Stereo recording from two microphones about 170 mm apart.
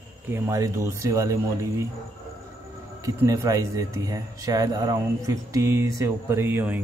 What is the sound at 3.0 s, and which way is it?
Speech, 20° right (ahead or behind).